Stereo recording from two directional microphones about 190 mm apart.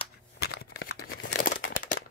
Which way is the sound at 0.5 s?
60° left (ahead or behind).